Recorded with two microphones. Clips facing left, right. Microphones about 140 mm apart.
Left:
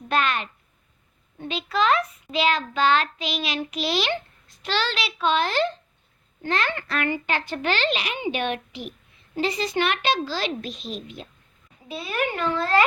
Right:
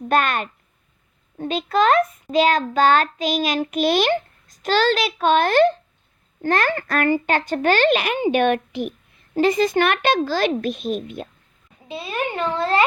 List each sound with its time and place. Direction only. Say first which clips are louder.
0.1 s a child's voice: right 4 dB; 50° right (ahead or behind)
11.9 s a child's voice: right 1 dB; 25° right (ahead or behind)